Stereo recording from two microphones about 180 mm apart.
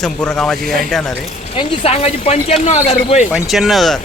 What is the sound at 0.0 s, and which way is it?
Speech, 5° left (ahead or behind).